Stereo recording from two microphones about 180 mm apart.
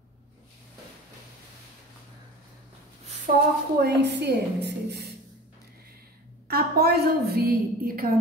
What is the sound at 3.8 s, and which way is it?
A woman's voice, 65° right (ahead or behind).